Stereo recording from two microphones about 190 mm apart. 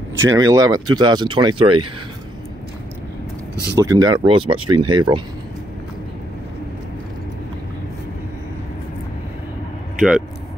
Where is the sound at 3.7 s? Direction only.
20° right (ahead or behind).